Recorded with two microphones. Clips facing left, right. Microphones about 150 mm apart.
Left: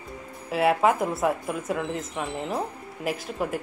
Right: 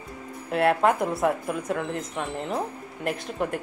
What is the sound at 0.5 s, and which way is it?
A woman's voice, centre (ahead or behind).